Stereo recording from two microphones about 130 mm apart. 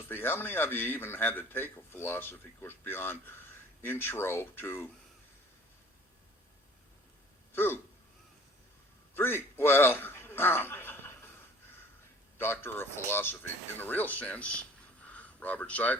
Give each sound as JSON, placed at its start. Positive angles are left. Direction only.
{"t": 0.1, "sound": "a man's voice", "side_deg": 15}
{"t": 7.5, "sound": "speech", "side_deg": 20}
{"t": 9.1, "sound": "a man's voice", "side_deg": 15}
{"t": 12.4, "sound": "a man's voice", "side_deg": 20}